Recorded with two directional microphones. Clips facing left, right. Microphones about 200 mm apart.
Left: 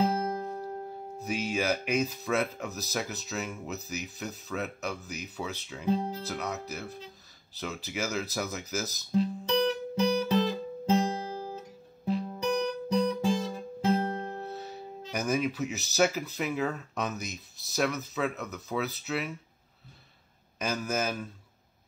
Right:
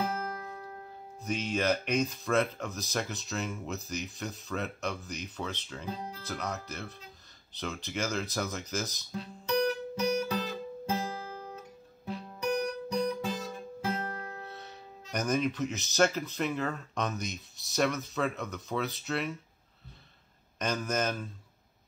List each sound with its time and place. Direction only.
0.0 s music: 25° left (ahead or behind)
1.2 s speech: 5° left (ahead or behind)
5.9 s speech: 25° left (ahead or behind)
6.2 s speech: 5° left (ahead or behind)
9.1 s guitar: 30° left (ahead or behind)
13.5 s music: 25° left (ahead or behind)
14.5 s speech: 5° left (ahead or behind)
20.5 s speech: 5° left (ahead or behind)